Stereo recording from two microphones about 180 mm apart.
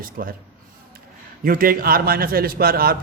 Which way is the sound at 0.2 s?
55° right (ahead or behind).